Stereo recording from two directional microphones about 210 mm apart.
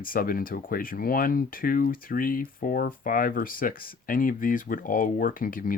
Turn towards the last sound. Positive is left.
turn(degrees=40)  # may be behind; listen again after turning